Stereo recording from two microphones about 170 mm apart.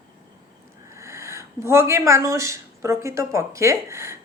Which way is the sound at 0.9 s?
15° right (ahead or behind).